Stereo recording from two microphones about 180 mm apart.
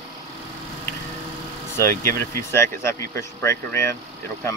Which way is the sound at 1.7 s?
15° left (ahead or behind).